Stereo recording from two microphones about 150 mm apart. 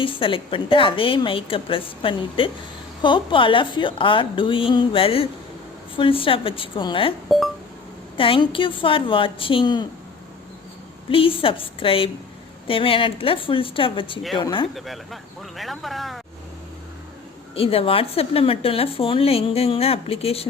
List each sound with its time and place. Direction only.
0.0 s speech: 35° left (ahead or behind)
7.3 s speech: centre (ahead or behind)
8.1 s speech: 35° left (ahead or behind)
11.1 s speech: 35° left (ahead or behind)
14.8 s speech: centre (ahead or behind)
17.5 s speech: 40° left (ahead or behind)